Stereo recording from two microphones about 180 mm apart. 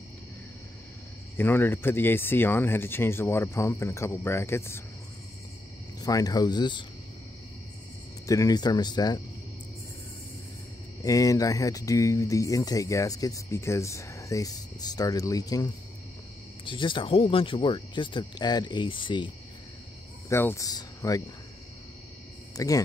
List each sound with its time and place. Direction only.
1.4 s speech: 10° left (ahead or behind)
5.9 s speech: 20° left (ahead or behind)
8.3 s speech: 20° left (ahead or behind)
11.0 s speech: 20° left (ahead or behind)
20.2 s speech: 15° left (ahead or behind)
22.6 s speech: 20° left (ahead or behind)